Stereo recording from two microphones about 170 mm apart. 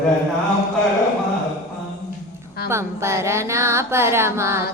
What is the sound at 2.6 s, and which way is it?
Music, 15° right (ahead or behind).